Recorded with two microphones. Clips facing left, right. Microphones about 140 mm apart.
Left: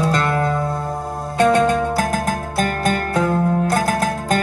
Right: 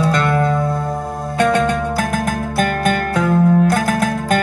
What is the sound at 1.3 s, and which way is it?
Music, 30° left (ahead or behind).